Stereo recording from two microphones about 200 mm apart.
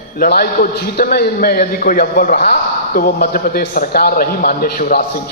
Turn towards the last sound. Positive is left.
turn(degrees=45)  # may be behind; listen again after turning